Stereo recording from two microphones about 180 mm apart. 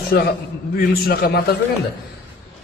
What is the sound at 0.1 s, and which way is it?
A man's voice, 60° left (ahead or behind).